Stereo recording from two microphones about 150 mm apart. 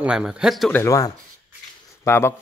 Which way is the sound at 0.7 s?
20° left (ahead or behind).